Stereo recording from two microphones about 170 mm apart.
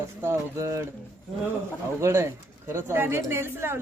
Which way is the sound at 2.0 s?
15° right (ahead or behind).